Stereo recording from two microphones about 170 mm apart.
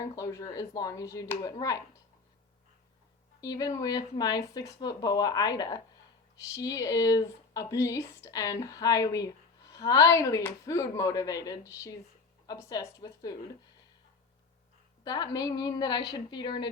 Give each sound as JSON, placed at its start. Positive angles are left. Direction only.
{"t": 0.0, "sound": "speech", "side_deg": 20}
{"t": 3.4, "sound": "speech", "side_deg": 20}
{"t": 15.0, "sound": "speech", "side_deg": 20}